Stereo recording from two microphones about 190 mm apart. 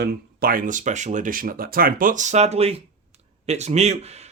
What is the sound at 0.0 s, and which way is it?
Speech, 55° right (ahead or behind).